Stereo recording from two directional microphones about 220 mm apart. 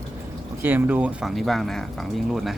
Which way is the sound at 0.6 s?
10° right (ahead or behind).